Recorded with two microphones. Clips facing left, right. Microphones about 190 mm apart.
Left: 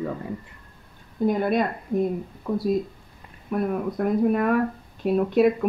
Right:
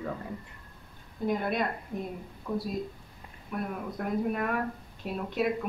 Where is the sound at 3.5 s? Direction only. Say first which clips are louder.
Left 9 dB; 45° left (ahead or behind).